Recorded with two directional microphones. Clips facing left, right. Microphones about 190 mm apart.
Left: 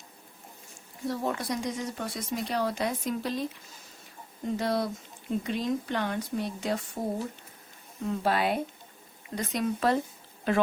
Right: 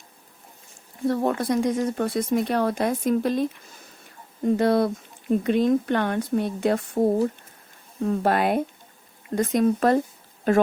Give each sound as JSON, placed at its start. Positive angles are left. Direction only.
{"t": 1.0, "sound": "speech", "side_deg": -55}
{"t": 4.4, "sound": "speech", "side_deg": -55}
{"t": 8.0, "sound": "speech", "side_deg": -55}